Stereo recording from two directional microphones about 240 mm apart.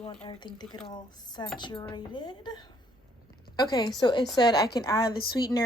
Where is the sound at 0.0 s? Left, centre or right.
Left.